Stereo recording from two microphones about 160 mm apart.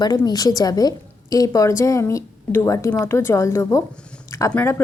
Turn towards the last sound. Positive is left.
turn(degrees=10)  # may be behind; listen again after turning